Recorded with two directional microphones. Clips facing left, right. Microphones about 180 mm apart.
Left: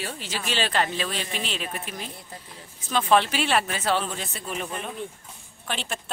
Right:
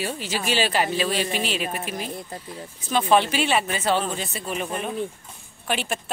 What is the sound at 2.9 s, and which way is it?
Speech, 5° right (ahead or behind).